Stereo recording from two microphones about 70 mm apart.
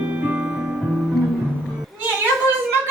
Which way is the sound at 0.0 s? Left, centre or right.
Right.